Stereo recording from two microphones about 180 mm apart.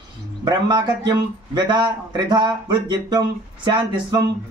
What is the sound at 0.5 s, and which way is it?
A man's voice, 25° right (ahead or behind).